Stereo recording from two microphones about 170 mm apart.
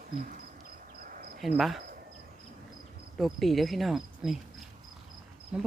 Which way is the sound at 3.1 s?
Centre (ahead or behind).